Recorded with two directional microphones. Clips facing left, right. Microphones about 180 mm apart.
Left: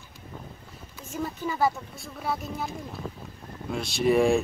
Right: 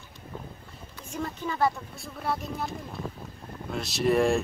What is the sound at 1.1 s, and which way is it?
Speech, 5° left (ahead or behind).